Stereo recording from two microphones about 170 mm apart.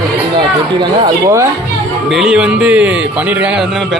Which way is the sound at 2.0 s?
Centre (ahead or behind).